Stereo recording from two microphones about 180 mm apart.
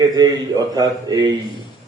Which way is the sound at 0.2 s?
20° right (ahead or behind).